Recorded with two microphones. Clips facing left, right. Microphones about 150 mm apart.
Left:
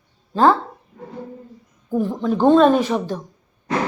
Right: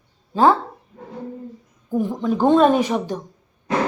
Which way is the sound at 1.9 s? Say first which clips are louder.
Left 1 dB; 15° right (ahead or behind).